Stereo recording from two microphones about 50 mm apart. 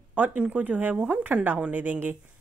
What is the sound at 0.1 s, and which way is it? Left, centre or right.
Speech, right.